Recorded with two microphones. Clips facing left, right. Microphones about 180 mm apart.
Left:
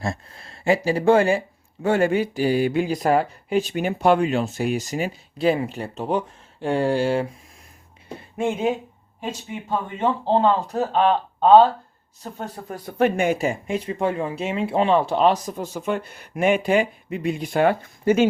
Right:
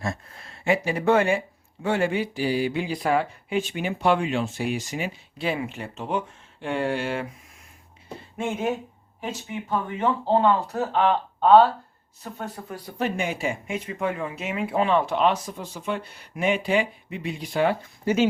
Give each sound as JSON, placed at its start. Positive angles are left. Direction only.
{"t": 0.0, "sound": "speech", "side_deg": 30}
{"t": 1.8, "sound": "speech", "side_deg": 45}
{"t": 9.2, "sound": "speech", "side_deg": 25}
{"t": 12.7, "sound": "speech", "side_deg": 55}